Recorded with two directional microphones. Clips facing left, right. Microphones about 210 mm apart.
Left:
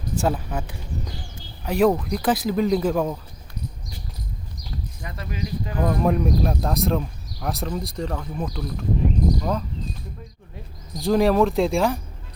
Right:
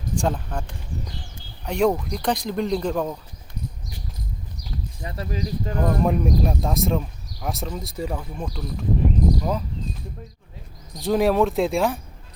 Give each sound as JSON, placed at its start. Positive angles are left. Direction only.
{"t": 0.2, "sound": "speech", "side_deg": 5}
{"t": 5.0, "sound": "speech", "side_deg": -35}
{"t": 5.7, "sound": "speech", "side_deg": 0}
{"t": 10.9, "sound": "speech", "side_deg": 0}